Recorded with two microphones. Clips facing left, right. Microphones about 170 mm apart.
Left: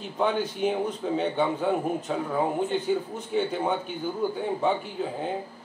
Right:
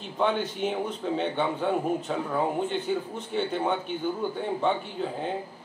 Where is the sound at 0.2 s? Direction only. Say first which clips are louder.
Left 1 dB; centre (ahead or behind).